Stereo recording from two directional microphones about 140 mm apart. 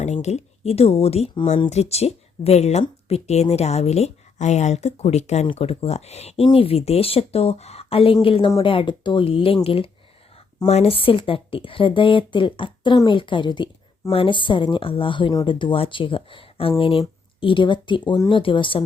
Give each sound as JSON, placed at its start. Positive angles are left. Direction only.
{"t": 0.0, "sound": "speech", "side_deg": 55}